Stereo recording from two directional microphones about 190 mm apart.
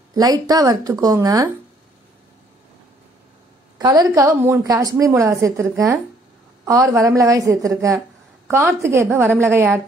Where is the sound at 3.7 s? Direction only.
20° right (ahead or behind).